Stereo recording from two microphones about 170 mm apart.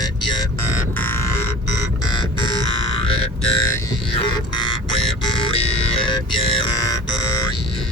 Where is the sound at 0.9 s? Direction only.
10° left (ahead or behind).